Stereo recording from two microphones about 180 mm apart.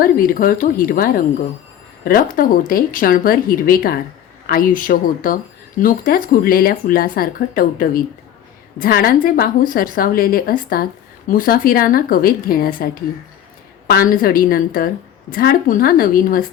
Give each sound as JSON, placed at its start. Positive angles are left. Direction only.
{"t": 0.0, "sound": "speech", "side_deg": 50}